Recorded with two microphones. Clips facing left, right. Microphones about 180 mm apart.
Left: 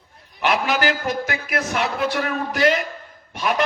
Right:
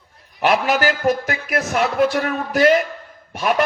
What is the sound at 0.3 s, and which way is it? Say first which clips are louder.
A man's voice: right 3 dB; 40° right (ahead or behind).